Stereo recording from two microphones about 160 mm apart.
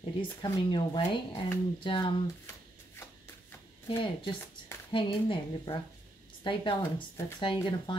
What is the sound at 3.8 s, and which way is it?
Speech, 30° left (ahead or behind).